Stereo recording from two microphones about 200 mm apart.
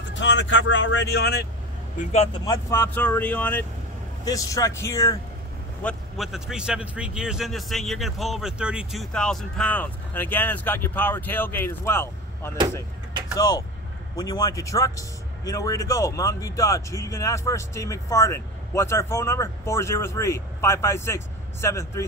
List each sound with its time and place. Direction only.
0.1 s speech: 65° left (ahead or behind)
2.3 s a man's voice: 20° left (ahead or behind)
5.8 s a man's voice: 5° left (ahead or behind)